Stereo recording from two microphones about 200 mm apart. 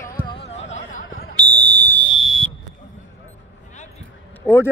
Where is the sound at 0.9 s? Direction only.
45° left (ahead or behind).